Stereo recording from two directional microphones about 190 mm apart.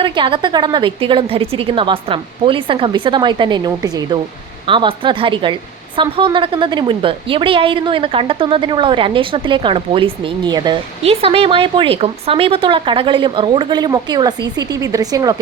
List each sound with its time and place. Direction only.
0.0 s a woman's voice: 25° right (ahead or behind)